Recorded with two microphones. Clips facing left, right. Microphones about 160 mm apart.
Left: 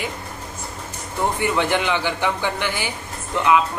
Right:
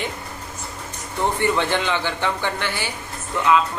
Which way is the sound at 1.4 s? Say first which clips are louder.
Left 1 dB; 15° left (ahead or behind).